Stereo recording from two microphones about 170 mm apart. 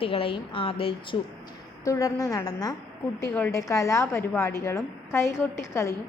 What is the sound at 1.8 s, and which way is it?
A woman's voice, 20° left (ahead or behind).